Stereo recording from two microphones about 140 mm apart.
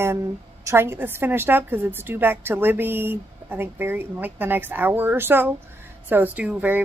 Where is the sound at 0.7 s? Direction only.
15° right (ahead or behind).